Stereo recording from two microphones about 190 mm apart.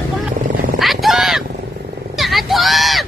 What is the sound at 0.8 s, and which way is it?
Vehicle, centre (ahead or behind).